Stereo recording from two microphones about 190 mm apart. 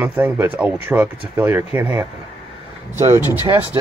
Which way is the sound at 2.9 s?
15° right (ahead or behind).